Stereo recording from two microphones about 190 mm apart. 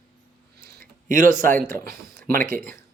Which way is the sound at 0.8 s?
45° right (ahead or behind).